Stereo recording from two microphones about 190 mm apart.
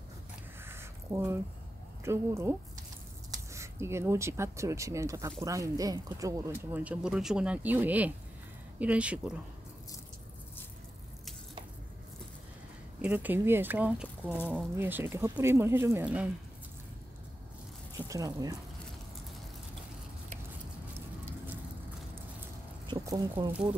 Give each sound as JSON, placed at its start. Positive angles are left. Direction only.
{"t": 0.7, "sound": "a sound", "side_deg": -15}
{"t": 2.0, "sound": "speech", "side_deg": -15}
{"t": 3.5, "sound": "speech", "side_deg": -15}
{"t": 13.0, "sound": "speech", "side_deg": -10}
{"t": 17.9, "sound": "speech", "side_deg": -20}
{"t": 22.8, "sound": "speech", "side_deg": -20}